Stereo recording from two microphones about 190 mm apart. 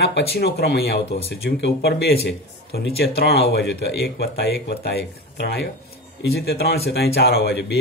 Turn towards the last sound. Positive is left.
turn(degrees=60)  # may be behind; listen again after turning